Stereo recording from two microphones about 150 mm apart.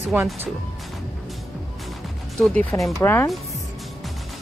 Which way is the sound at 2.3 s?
5° left (ahead or behind).